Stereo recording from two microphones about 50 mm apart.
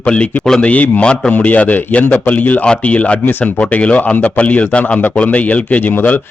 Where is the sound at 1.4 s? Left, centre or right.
Left.